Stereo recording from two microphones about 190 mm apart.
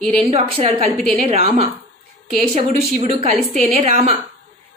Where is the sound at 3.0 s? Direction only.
30° right (ahead or behind).